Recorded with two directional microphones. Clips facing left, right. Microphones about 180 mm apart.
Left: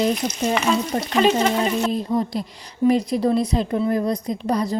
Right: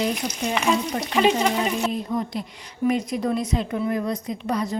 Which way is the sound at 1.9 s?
35° left (ahead or behind).